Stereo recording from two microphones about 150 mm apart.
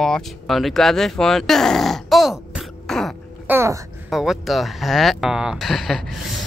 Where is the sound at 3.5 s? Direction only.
15° right (ahead or behind).